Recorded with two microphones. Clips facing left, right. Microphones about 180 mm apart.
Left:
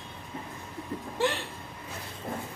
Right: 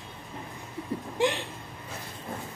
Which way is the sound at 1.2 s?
15° right (ahead or behind).